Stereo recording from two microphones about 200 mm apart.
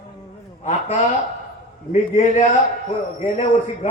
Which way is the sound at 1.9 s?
30° left (ahead or behind).